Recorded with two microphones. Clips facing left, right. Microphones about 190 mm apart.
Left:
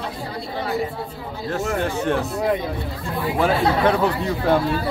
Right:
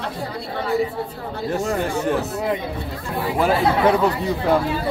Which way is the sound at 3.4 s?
5° right (ahead or behind).